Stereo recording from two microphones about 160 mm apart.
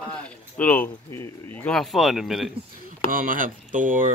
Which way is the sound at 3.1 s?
60° right (ahead or behind).